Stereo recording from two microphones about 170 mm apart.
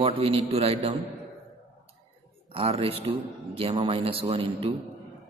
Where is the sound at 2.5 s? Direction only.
35° right (ahead or behind).